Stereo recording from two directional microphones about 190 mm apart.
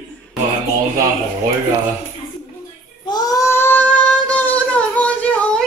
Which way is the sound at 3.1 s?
20° left (ahead or behind).